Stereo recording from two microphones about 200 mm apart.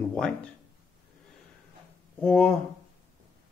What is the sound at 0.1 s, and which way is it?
Speech, 5° left (ahead or behind).